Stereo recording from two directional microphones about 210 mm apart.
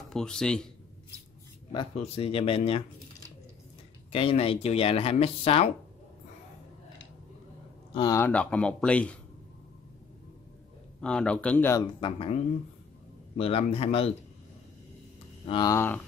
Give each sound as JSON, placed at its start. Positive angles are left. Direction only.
{"t": 0.1, "sound": "speech", "side_deg": 5}
{"t": 1.7, "sound": "speech", "side_deg": 25}
{"t": 4.1, "sound": "speech", "side_deg": 25}
{"t": 7.9, "sound": "speech", "side_deg": 20}
{"t": 11.0, "sound": "speech", "side_deg": 5}
{"t": 12.0, "sound": "speech", "side_deg": 25}
{"t": 13.4, "sound": "speech", "side_deg": 30}
{"t": 15.4, "sound": "speech", "side_deg": 20}